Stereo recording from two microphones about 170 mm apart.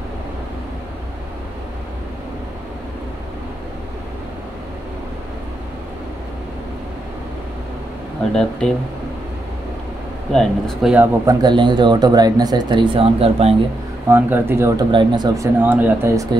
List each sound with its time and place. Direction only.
8.2 s speech: 5° left (ahead or behind)
10.3 s speech: centre (ahead or behind)
11.2 s speech: 25° right (ahead or behind)
14.0 s speech: 15° right (ahead or behind)
14.9 s speech: 25° right (ahead or behind)